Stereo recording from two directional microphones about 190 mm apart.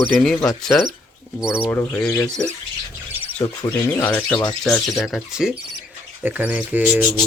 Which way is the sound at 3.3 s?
10° left (ahead or behind).